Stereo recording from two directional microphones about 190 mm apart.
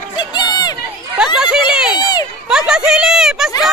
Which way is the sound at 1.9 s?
20° left (ahead or behind).